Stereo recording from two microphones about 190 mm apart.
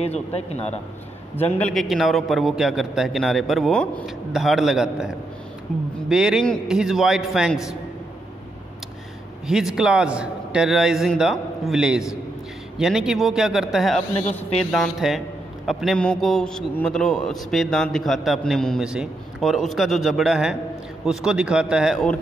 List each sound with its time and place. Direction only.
0.0 s speech: 35° left (ahead or behind)
1.3 s a man's voice: 10° left (ahead or behind)
9.5 s a man's voice: centre (ahead or behind)